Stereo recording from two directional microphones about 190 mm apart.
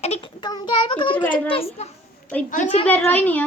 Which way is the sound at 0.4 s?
20° left (ahead or behind).